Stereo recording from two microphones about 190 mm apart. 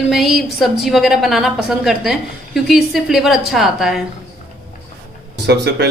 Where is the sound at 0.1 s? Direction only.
Centre (ahead or behind).